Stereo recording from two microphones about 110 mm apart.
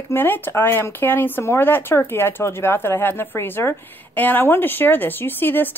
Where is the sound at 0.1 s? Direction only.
20° left (ahead or behind).